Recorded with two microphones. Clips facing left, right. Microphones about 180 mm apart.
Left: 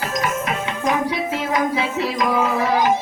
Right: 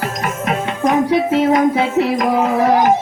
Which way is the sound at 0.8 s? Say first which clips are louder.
Right 7 dB; 55° right (ahead or behind).